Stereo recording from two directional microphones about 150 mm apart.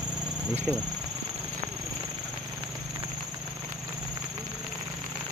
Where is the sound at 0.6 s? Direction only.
5° right (ahead or behind).